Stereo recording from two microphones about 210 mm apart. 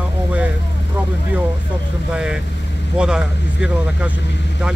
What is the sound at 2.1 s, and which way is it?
Speech, 5° right (ahead or behind).